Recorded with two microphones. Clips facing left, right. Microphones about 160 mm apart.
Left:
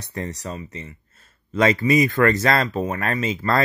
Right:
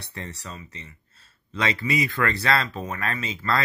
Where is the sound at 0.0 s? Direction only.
40° left (ahead or behind).